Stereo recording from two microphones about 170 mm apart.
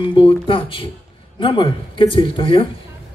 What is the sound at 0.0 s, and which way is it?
Music, 30° left (ahead or behind).